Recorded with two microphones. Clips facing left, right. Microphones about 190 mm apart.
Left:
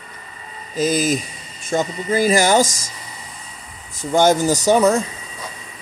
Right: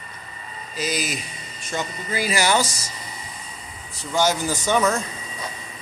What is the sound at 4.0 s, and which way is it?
Speech, 50° left (ahead or behind).